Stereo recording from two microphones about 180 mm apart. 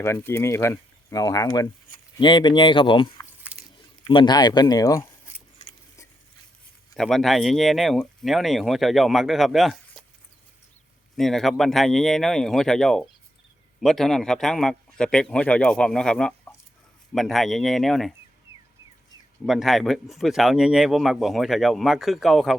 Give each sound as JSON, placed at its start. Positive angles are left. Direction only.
{"t": 0.0, "sound": "speech", "side_deg": 15}
{"t": 3.5, "sound": "biting", "side_deg": -10}
{"t": 4.0, "sound": "speech", "side_deg": 25}
{"t": 6.9, "sound": "speech", "side_deg": 0}
{"t": 11.2, "sound": "speech", "side_deg": 0}
{"t": 19.5, "sound": "speech", "side_deg": 0}